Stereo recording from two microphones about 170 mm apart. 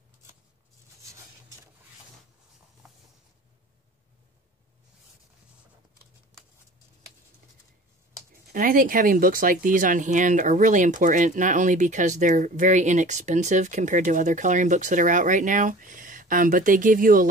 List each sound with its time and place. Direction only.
8.5 s speech: 55° right (ahead or behind)